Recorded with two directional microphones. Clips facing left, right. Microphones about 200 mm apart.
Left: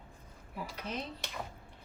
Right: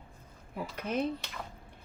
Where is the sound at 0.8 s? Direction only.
55° right (ahead or behind).